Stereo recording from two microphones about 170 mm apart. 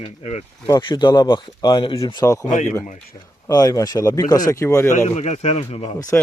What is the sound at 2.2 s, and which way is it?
Speech, 15° left (ahead or behind).